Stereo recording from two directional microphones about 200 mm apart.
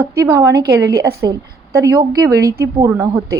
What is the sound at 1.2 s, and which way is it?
A woman's voice, 15° right (ahead or behind).